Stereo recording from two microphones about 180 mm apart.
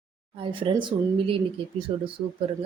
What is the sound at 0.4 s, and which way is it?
A woman's voice, 25° right (ahead or behind).